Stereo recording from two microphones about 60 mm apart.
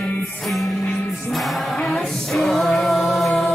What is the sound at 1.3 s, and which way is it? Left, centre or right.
Music, centre.